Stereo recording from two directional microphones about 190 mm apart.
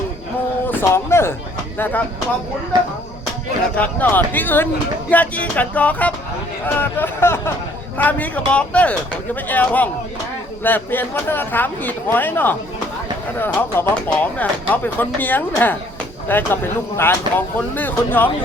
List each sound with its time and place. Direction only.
0.7 s speech: 10° left (ahead or behind)
2.7 s speech: 20° right (ahead or behind)
3.8 s speech: 10° left (ahead or behind)